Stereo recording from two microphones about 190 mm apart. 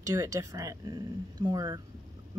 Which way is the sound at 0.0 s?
15° right (ahead or behind).